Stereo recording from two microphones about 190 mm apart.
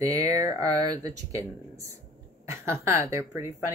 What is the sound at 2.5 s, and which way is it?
Speech, 15° right (ahead or behind).